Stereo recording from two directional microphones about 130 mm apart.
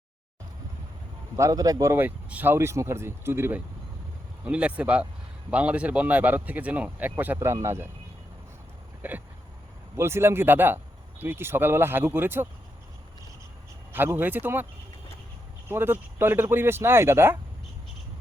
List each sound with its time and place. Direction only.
1.4 s speech: 25° right (ahead or behind)
9.0 s speech: 15° right (ahead or behind)
13.9 s speech: 15° right (ahead or behind)
15.7 s speech: 15° right (ahead or behind)